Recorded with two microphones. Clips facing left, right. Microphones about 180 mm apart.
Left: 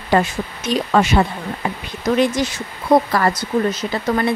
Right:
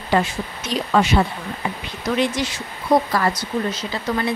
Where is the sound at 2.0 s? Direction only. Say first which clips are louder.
Left 4 dB; 45° left (ahead or behind).